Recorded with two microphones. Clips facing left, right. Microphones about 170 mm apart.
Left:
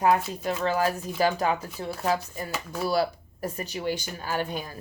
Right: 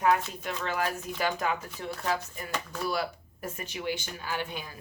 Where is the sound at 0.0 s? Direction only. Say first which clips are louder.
Left 3 dB; 35° left (ahead or behind).